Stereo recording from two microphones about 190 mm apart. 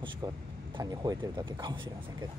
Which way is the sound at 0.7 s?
20° right (ahead or behind).